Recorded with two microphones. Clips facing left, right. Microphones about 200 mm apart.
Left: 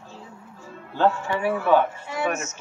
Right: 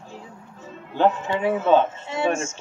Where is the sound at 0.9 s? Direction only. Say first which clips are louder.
Right 1 dB; 20° right (ahead or behind).